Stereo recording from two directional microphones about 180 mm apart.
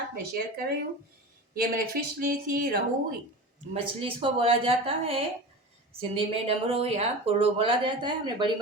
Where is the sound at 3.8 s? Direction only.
30° right (ahead or behind).